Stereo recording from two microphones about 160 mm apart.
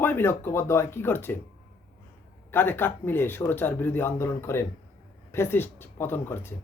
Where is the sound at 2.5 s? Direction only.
15° left (ahead or behind).